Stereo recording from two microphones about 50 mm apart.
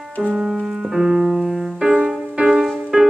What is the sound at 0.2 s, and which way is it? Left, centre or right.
Music, centre.